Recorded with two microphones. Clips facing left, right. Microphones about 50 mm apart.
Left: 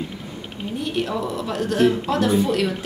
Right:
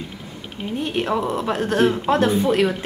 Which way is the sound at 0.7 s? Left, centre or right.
Right.